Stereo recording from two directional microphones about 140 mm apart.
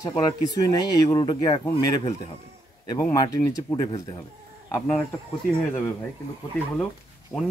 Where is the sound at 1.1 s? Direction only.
25° left (ahead or behind).